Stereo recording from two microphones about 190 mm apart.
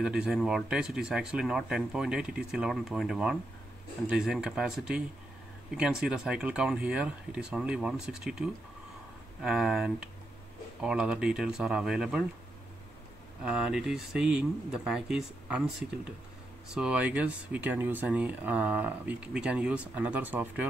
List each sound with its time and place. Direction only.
0.0 s speech: 5° right (ahead or behind)
13.4 s speech: 5° right (ahead or behind)
16.7 s speech: 5° right (ahead or behind)